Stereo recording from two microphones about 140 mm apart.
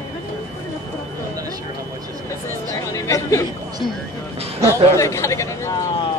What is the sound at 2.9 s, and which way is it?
Speech, 20° left (ahead or behind).